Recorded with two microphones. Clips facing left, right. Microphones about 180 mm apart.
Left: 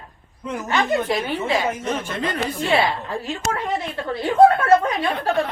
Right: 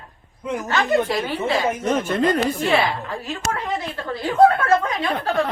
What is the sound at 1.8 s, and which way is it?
Chopping, 45° right (ahead or behind).